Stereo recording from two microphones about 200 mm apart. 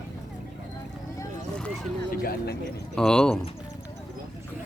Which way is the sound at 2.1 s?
50° left (ahead or behind).